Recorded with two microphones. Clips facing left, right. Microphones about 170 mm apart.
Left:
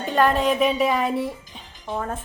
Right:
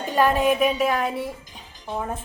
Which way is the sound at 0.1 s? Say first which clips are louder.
Even; 5° right (ahead or behind).